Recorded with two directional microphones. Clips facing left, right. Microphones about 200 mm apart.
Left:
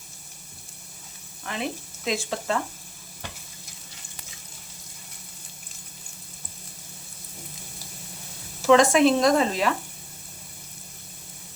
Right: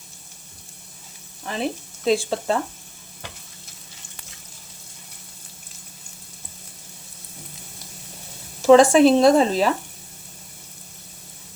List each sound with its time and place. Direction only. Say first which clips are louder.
1.5 s speech: right 4 dB; 35° right (ahead or behind)
8.6 s speech: right 5 dB; 35° right (ahead or behind)